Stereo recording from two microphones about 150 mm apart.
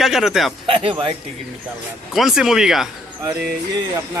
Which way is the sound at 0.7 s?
35° right (ahead or behind).